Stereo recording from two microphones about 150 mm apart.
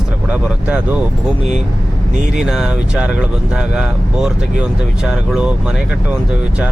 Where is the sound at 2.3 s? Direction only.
5° right (ahead or behind).